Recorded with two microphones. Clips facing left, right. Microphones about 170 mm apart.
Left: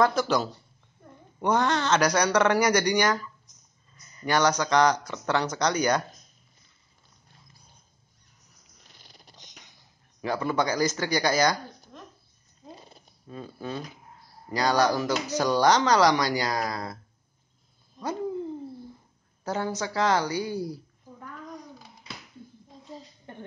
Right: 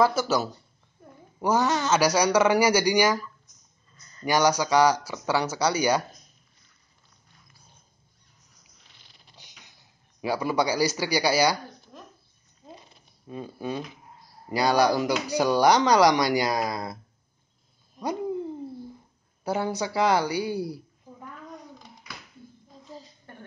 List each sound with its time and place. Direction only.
0.0 s speech: 5° right (ahead or behind)
4.2 s speech: 10° right (ahead or behind)
10.2 s speech: 10° right (ahead or behind)
13.3 s speech: 15° right (ahead or behind)
17.9 s hoot: 15° right (ahead or behind)
19.4 s speech: 10° right (ahead or behind)
23.3 s a sound: 20° left (ahead or behind)